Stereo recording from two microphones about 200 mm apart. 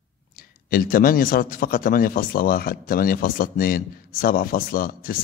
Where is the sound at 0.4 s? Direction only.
45° left (ahead or behind).